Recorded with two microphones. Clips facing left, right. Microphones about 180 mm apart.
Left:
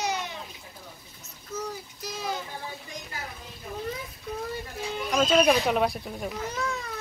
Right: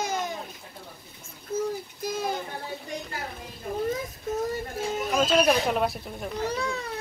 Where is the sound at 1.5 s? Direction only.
50° right (ahead or behind).